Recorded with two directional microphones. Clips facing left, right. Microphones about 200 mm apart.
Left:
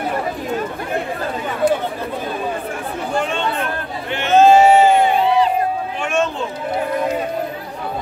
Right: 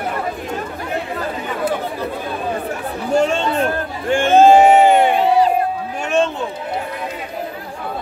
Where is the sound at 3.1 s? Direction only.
40° right (ahead or behind); by 5.1 s 60° right (ahead or behind).